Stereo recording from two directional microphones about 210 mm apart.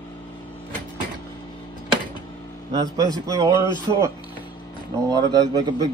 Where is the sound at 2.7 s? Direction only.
15° right (ahead or behind).